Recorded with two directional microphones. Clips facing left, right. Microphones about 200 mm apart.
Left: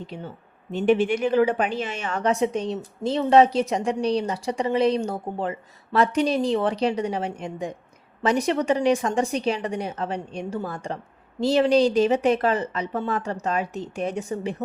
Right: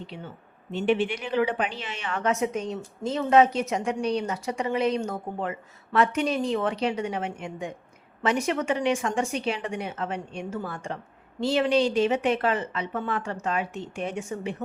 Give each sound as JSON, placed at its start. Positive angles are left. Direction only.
{"t": 0.1, "sound": "a woman's voice", "side_deg": 45}